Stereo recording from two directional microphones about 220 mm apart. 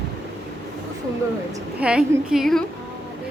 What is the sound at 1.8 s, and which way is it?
Speech, 5° right (ahead or behind).